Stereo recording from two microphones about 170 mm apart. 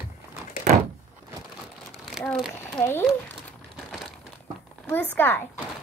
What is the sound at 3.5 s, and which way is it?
Crumpling, centre (ahead or behind).